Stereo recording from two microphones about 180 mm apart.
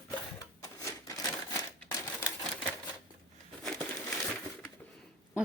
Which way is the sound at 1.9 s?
15° left (ahead or behind).